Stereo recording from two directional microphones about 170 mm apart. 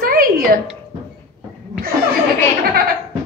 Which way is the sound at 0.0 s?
60° right (ahead or behind).